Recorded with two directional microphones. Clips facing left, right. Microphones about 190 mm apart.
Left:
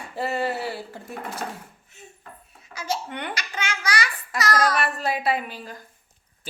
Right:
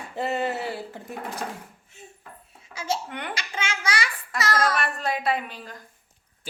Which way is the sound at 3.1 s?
5° right (ahead or behind).